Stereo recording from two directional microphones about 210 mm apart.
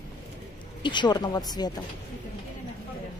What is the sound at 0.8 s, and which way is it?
Speech, 20° left (ahead or behind).